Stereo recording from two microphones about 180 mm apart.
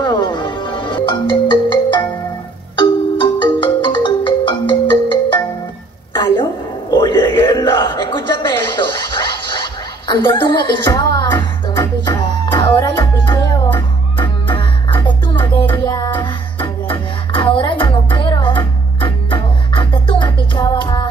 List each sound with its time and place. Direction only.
0.0 s music: 25° left (ahead or behind)
6.9 s a sound: 25° left (ahead or behind)
9.5 s rodents: 25° left (ahead or behind)
10.8 s music: 25° left (ahead or behind)